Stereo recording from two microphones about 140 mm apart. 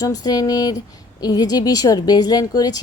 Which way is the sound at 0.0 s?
30° left (ahead or behind).